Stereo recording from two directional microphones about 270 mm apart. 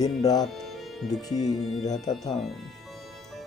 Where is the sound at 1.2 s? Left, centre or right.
Centre.